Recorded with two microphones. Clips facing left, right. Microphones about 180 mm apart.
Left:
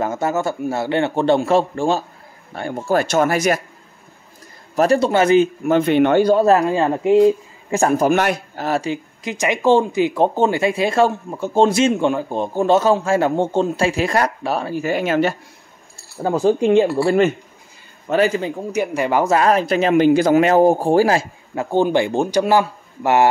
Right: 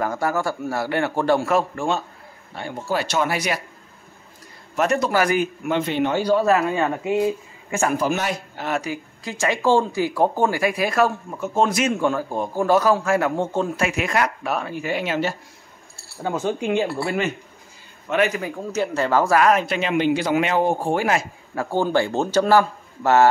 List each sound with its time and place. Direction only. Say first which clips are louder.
0.0 s speech: left 3 dB; 20° left (ahead or behind)
2.5 s a man's voice: left 6 dB; 50° left (ahead or behind)
4.7 s speech: left 5 dB; 30° left (ahead or behind)
5.6 s a man's voice: left 7 dB; 45° left (ahead or behind)
6.4 s speech: left 4 dB; 35° left (ahead or behind)
8.1 s speech: left 7 dB; 60° left (ahead or behind)
8.5 s speech: left 5 dB; 35° left (ahead or behind); by 15.3 s 55° left (ahead or behind)
16.2 s speech: left 8 dB; 35° left (ahead or behind)
18.7 s speech: left 1 dB; 15° left (ahead or behind); by 21.3 s 35° left (ahead or behind)
21.5 s speech: left 4 dB; 20° left (ahead or behind)